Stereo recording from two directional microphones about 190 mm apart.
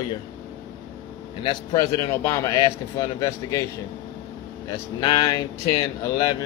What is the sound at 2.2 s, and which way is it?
Speech, 20° left (ahead or behind).